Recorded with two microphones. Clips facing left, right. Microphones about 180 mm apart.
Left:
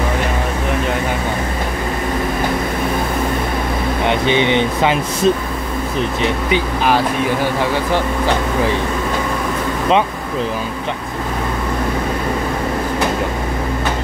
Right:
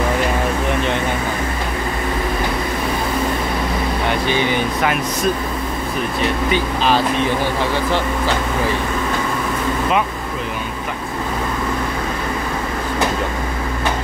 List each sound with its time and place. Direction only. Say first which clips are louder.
4.1 s speech: left 5 dB; 20° left (ahead or behind)